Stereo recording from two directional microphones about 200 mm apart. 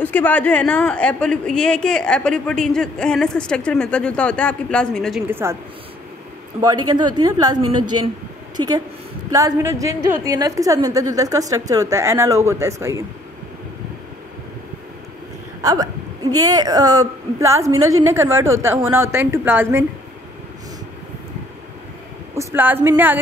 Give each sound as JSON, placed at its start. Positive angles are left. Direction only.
{"t": 0.0, "sound": "a woman's voice", "side_deg": 10}
{"t": 5.3, "sound": "a woman's voice", "side_deg": -15}
{"t": 6.9, "sound": "a woman's voice", "side_deg": -20}
{"t": 8.5, "sound": "a woman's voice", "side_deg": -20}
{"t": 15.6, "sound": "a sound", "side_deg": -20}
{"t": 16.4, "sound": "a woman's voice", "side_deg": -20}
{"t": 22.3, "sound": "a woman's voice", "side_deg": -15}